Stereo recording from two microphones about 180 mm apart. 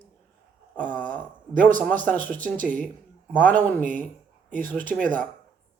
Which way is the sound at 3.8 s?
45° right (ahead or behind).